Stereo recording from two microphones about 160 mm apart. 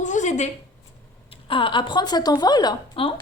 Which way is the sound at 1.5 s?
30° left (ahead or behind).